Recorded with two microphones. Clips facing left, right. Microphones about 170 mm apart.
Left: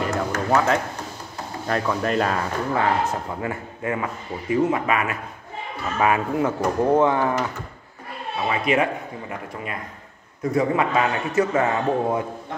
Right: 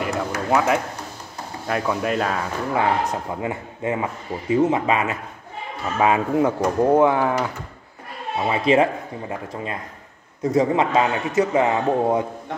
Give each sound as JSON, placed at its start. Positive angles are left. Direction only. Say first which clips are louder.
{"t": 0.0, "sound": "a sound", "louder": "even", "side_deg": -10}
{"t": 1.7, "sound": "speech", "louder": "even", "side_deg": -10}
{"t": 2.7, "sound": "a man's voice", "louder": "right 1 dB", "side_deg": -15}
{"t": 8.5, "sound": "a man's voice", "louder": "right 4 dB", "side_deg": -30}